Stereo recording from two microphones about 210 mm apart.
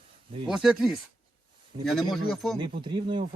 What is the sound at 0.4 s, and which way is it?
Speech, centre (ahead or behind).